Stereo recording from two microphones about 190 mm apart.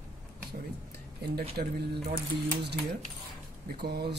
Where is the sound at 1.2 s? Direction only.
55° right (ahead or behind).